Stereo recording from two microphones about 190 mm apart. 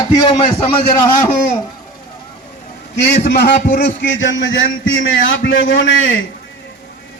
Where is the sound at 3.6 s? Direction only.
45° left (ahead or behind).